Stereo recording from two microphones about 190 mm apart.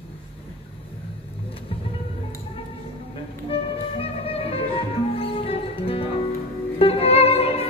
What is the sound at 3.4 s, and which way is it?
Music, 30° left (ahead or behind).